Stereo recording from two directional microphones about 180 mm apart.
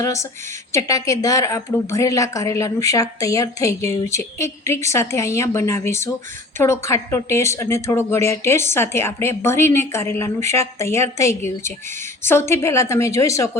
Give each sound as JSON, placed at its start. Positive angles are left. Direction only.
{"t": 0.0, "sound": "a woman's voice", "side_deg": 15}